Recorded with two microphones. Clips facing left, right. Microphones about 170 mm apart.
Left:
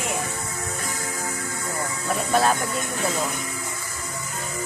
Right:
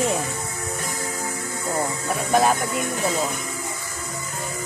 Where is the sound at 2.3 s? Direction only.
15° right (ahead or behind).